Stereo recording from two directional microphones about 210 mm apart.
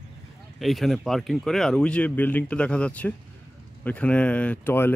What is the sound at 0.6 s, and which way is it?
Speech, centre (ahead or behind).